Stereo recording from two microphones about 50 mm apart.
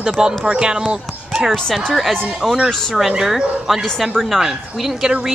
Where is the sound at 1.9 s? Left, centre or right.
Centre.